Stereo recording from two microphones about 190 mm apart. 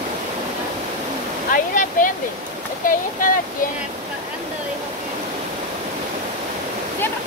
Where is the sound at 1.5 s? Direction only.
45° left (ahead or behind).